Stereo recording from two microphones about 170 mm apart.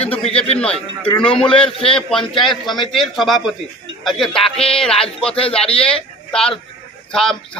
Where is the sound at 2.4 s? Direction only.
Centre (ahead or behind).